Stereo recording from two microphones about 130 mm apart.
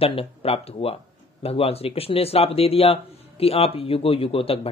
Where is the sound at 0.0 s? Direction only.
50° left (ahead or behind).